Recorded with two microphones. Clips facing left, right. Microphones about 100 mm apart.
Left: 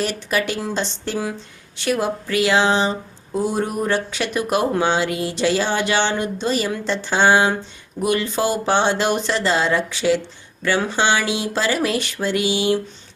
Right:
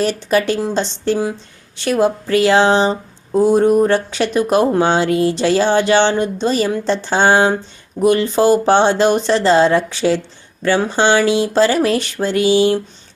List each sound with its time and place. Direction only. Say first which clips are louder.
0.0 s speech: right 6 dB; 35° right (ahead or behind)